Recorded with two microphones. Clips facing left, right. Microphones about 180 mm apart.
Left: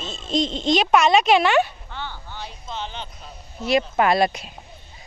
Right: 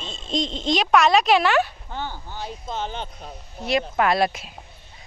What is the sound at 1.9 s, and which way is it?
Speech, 45° right (ahead or behind).